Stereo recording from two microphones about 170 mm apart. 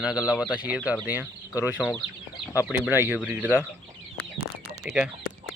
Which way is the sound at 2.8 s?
10° right (ahead or behind).